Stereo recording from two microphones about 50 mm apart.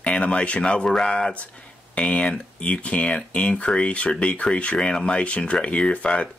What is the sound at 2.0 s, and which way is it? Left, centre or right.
Speech, left.